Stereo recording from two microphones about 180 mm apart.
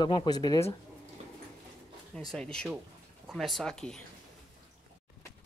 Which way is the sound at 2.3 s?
5° left (ahead or behind).